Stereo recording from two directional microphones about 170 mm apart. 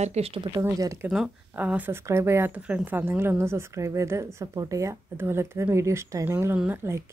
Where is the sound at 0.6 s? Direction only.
15° right (ahead or behind).